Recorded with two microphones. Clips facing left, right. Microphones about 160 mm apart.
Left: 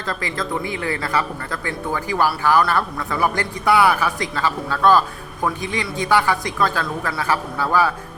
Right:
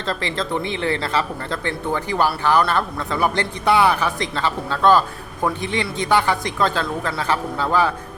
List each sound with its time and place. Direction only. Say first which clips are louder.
0.1 s speech: right 1 dB; 25° right (ahead or behind)